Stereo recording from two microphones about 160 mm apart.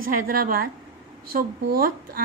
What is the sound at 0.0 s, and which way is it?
A woman's voice, 60° right (ahead or behind).